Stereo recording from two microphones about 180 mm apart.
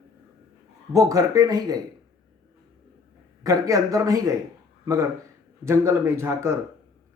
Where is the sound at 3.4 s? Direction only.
20° right (ahead or behind).